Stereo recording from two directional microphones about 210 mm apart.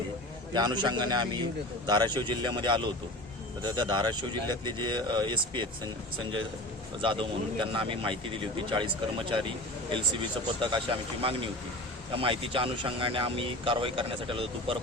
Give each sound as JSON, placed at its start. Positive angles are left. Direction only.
{"t": 0.5, "sound": "speech", "side_deg": -20}
{"t": 7.0, "sound": "speech", "side_deg": -25}
{"t": 10.6, "sound": "speech", "side_deg": -25}